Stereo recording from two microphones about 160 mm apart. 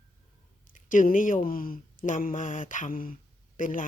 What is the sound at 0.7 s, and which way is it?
A man's voice, 55° left (ahead or behind).